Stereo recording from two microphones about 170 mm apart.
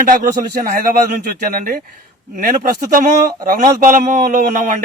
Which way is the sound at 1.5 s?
50° right (ahead or behind).